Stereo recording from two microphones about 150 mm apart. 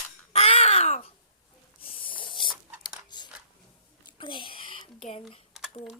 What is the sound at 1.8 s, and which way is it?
Spray, 35° left (ahead or behind).